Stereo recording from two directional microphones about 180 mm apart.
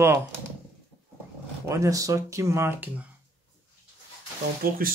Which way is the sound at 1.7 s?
20° right (ahead or behind).